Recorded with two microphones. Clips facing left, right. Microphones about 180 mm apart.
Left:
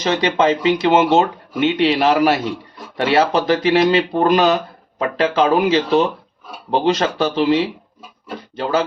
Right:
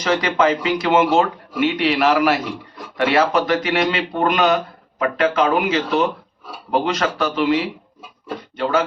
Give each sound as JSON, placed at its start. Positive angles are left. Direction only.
{"t": 0.0, "sound": "speech", "side_deg": 25}